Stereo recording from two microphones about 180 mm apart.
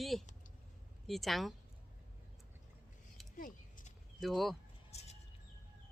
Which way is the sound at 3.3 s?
50° left (ahead or behind).